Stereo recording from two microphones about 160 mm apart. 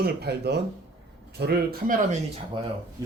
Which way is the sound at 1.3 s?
80° right.